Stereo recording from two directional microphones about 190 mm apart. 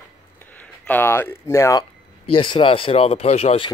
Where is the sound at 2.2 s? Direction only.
25° left (ahead or behind).